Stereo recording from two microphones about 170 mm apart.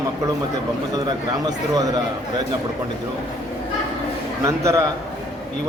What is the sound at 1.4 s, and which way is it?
Speech, 20° right (ahead or behind).